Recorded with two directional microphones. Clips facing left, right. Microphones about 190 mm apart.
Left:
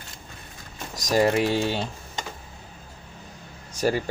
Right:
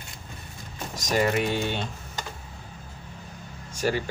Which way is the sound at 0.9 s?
35° left (ahead or behind).